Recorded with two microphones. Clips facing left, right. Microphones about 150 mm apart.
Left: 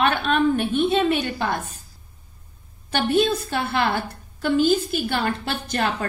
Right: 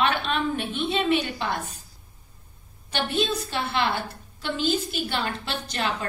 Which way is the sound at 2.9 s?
50° left (ahead or behind).